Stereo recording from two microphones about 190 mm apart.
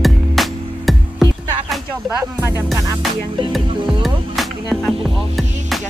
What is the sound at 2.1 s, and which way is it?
Music, 15° right (ahead or behind).